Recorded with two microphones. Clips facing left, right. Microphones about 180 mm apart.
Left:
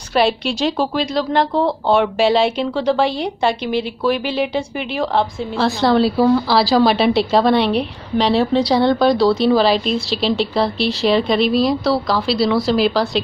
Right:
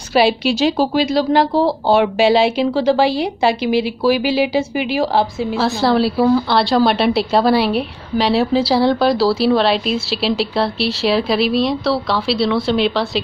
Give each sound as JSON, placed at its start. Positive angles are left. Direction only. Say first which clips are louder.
{"t": 0.1, "sound": "a woman's voice", "louder": "right 2 dB", "side_deg": -5}